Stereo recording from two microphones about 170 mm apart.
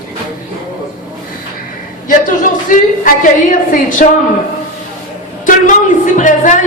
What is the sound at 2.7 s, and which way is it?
A man's voice, 50° left (ahead or behind).